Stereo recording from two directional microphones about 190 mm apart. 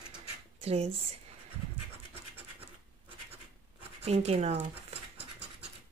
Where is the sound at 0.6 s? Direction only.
35° right (ahead or behind).